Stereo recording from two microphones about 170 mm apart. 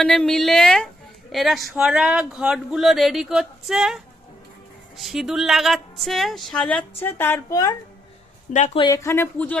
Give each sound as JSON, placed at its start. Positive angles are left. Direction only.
{"t": 0.0, "sound": "speech", "side_deg": 0}
{"t": 9.0, "sound": "speech", "side_deg": 15}